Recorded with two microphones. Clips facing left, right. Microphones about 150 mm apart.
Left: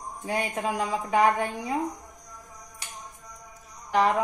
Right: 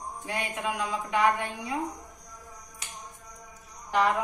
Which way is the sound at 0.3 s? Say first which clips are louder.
Left 4 dB; 40° left (ahead or behind).